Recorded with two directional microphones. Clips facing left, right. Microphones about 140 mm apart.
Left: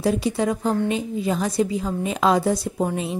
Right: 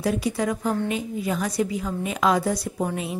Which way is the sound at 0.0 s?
25° left (ahead or behind).